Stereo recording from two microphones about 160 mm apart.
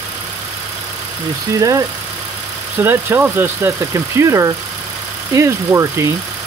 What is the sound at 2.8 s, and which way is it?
Speech, 15° right (ahead or behind).